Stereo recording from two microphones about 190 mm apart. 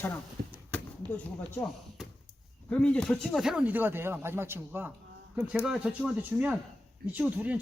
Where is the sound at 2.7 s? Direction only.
5° left (ahead or behind).